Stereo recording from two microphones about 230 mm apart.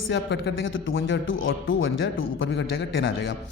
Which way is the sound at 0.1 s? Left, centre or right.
Left.